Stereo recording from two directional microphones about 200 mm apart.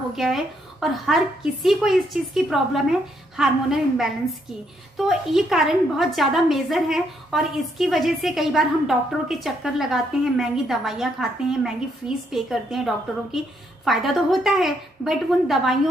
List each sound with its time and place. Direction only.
0.1 s a woman's voice: centre (ahead or behind)